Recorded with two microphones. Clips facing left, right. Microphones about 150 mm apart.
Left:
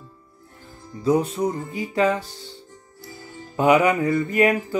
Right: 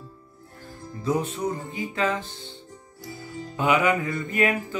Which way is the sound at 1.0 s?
30° left (ahead or behind).